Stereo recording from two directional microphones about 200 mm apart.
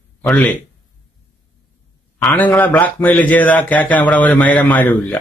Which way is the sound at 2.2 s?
10° left (ahead or behind).